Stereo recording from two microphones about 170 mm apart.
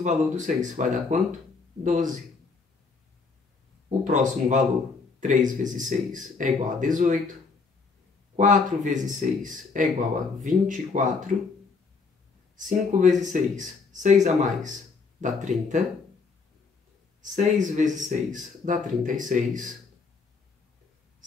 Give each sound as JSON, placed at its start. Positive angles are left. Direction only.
{"t": 0.0, "sound": "speech", "side_deg": -45}
{"t": 4.1, "sound": "speech", "side_deg": -45}
{"t": 8.4, "sound": "speech", "side_deg": -50}
{"t": 12.5, "sound": "speech", "side_deg": -50}
{"t": 17.2, "sound": "speech", "side_deg": -45}